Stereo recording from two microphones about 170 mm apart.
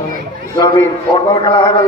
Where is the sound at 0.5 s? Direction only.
25° left (ahead or behind).